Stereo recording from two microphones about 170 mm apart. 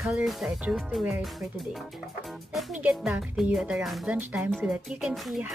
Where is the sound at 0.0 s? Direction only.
Centre (ahead or behind).